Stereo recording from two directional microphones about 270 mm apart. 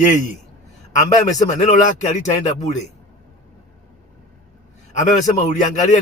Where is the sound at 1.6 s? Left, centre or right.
Left.